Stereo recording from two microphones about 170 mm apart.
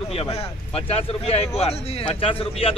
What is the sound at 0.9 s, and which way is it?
Speech, 35° left (ahead or behind).